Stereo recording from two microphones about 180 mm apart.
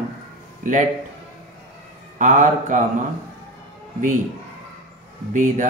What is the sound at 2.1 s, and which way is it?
Speech, 45° right (ahead or behind).